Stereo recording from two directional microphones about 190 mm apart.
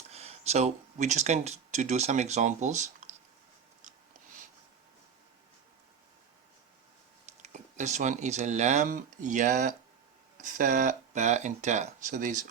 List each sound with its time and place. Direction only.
0.1 s speech: 35° right (ahead or behind)
7.3 s speech: 40° right (ahead or behind)